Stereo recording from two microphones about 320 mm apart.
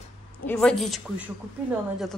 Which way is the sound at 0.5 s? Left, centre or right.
Centre.